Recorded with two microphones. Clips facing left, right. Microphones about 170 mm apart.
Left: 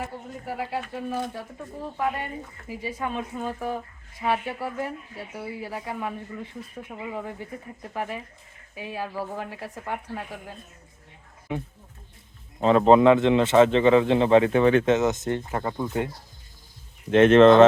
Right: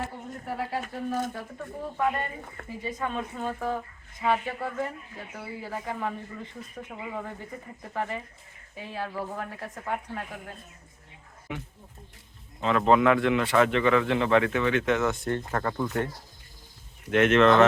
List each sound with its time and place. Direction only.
0.4 s speech: 5° left (ahead or behind)
2.6 s a woman's voice: 10° left (ahead or behind)
11.5 s a man's voice: 30° left (ahead or behind)
14.9 s a man's voice: 20° left (ahead or behind)
17.1 s a man's voice: 30° left (ahead or behind)